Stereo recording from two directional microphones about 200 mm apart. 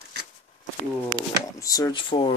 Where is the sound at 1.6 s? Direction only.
15° left (ahead or behind).